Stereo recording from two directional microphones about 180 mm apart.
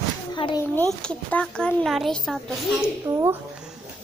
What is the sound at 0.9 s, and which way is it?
A child's voice, 5° left (ahead or behind).